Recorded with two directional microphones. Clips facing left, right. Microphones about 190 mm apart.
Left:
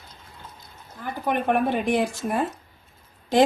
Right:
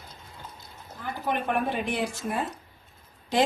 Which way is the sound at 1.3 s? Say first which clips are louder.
Left 6 dB; 50° left (ahead or behind).